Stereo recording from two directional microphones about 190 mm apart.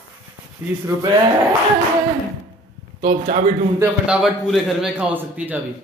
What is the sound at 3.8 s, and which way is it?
A man's voice, 5° right (ahead or behind).